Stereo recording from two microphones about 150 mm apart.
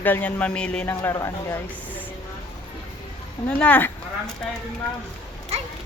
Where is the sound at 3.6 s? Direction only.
10° left (ahead or behind).